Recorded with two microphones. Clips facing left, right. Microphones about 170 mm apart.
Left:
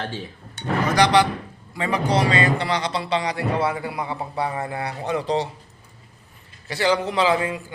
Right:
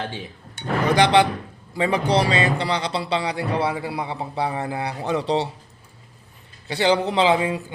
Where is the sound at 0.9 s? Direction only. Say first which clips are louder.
Even; 25° right (ahead or behind).